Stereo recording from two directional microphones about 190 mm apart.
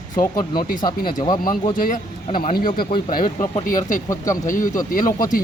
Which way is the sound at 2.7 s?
25° left (ahead or behind).